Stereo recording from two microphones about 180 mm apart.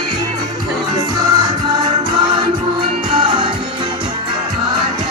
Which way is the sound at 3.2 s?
30° right (ahead or behind).